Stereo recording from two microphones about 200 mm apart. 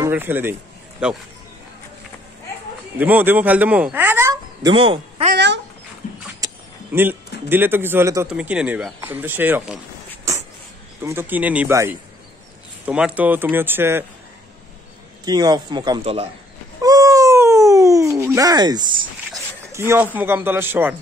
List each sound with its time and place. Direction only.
0.0 s speech: 10° right (ahead or behind)
3.0 s speech: 10° right (ahead or behind)
4.7 s speech: 25° right (ahead or behind)
5.3 s speech: 60° right (ahead or behind)
6.4 s speech: 10° right (ahead or behind)
11.0 s speech: 10° right (ahead or behind)
15.2 s speech: 20° right (ahead or behind)
16.8 s a sound: 20° right (ahead or behind)
19.7 s speech: 10° right (ahead or behind)